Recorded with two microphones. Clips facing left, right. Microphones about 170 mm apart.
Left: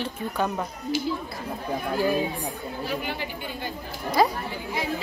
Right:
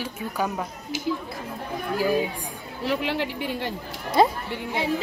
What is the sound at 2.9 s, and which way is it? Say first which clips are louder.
Speech: right 7 dB; 80° right.